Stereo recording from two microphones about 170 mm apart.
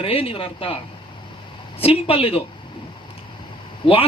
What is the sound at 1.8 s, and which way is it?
Speech, 35° left (ahead or behind).